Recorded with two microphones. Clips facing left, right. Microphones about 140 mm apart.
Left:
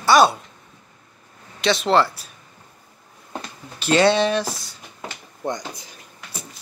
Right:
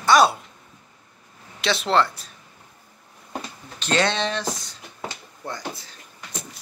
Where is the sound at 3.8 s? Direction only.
10° left (ahead or behind).